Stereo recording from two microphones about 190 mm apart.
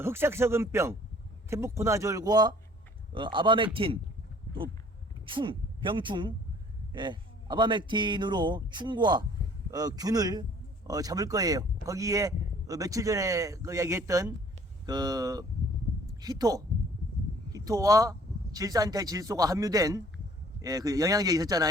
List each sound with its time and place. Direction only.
0.0 s a man's voice: 10° right (ahead or behind)
5.2 s a woman's voice: 25° right (ahead or behind)